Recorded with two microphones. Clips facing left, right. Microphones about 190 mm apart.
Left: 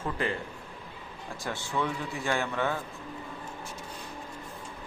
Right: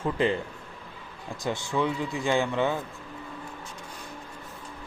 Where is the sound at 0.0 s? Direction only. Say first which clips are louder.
Right 6 dB; 20° right (ahead or behind).